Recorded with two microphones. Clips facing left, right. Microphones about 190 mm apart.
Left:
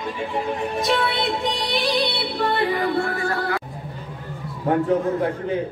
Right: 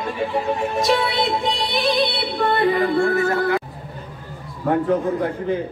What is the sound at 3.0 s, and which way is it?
Music, 25° right (ahead or behind).